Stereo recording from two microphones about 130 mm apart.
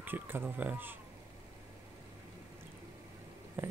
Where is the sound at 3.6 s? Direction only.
15° right (ahead or behind).